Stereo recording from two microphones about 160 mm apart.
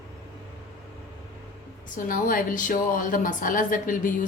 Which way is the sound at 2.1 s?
60° left (ahead or behind).